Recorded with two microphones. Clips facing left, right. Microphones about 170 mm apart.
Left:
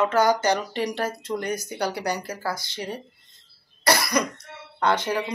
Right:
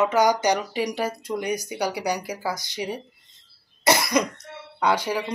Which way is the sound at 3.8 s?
20° right (ahead or behind).